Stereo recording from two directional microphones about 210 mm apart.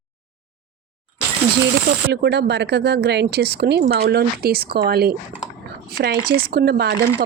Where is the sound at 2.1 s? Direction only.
55° right (ahead or behind).